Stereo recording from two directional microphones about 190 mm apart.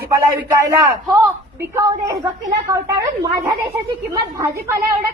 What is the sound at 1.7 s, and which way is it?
A woman's voice, 15° right (ahead or behind).